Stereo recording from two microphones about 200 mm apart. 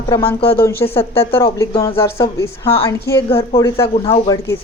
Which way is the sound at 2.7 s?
25° left (ahead or behind).